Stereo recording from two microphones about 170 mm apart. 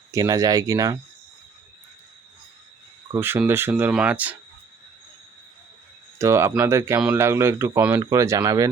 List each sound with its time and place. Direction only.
0.1 s speech: 20° right (ahead or behind)
3.2 s speech: 15° right (ahead or behind)
6.1 s speech: 15° right (ahead or behind)